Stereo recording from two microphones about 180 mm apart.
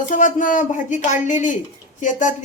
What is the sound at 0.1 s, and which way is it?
Speech, 45° left (ahead or behind).